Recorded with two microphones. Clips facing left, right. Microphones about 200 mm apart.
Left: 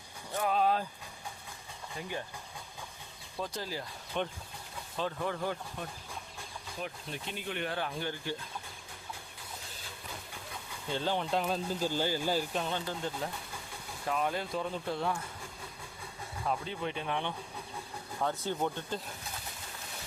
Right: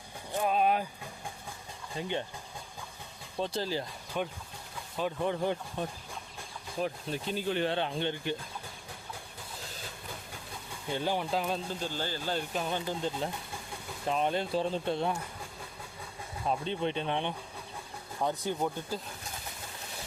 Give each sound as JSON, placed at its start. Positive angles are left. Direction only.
{"t": 0.3, "sound": "a sound", "side_deg": -20}
{"t": 2.0, "sound": "speech", "side_deg": -25}
{"t": 3.4, "sound": "speech", "side_deg": -30}
{"t": 4.1, "sound": "speech", "side_deg": -5}
{"t": 4.9, "sound": "speech", "side_deg": -15}
{"t": 6.7, "sound": "speech", "side_deg": -35}
{"t": 10.8, "sound": "speech", "side_deg": -15}
{"t": 11.7, "sound": "speech", "side_deg": 10}
{"t": 12.6, "sound": "speech", "side_deg": -15}
{"t": 16.5, "sound": "speech", "side_deg": -25}